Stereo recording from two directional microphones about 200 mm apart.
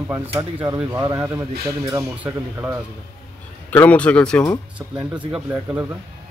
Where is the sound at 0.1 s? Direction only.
15° right (ahead or behind).